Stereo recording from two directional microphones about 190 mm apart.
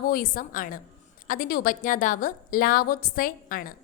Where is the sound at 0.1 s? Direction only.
45° left (ahead or behind).